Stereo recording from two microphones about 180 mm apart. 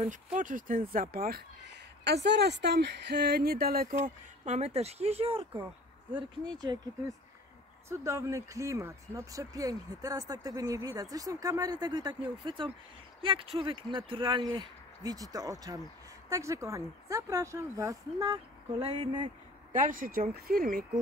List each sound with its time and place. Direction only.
0.0 s speech: 45° right (ahead or behind)
4.5 s speech: 35° right (ahead or behind)
6.6 s speech: 20° right (ahead or behind)
19.7 s speech: 50° right (ahead or behind)